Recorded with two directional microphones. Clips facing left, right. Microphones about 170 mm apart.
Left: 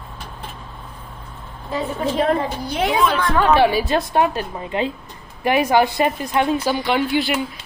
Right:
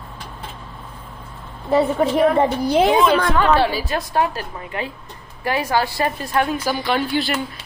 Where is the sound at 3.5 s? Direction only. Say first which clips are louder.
Left 3 dB; 20° left (ahead or behind).